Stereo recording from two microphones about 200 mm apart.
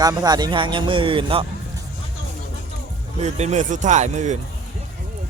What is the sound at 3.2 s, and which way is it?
Speech, 35° right (ahead or behind).